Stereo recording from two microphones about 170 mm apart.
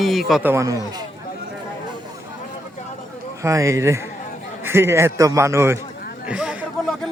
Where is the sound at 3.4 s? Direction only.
20° right (ahead or behind).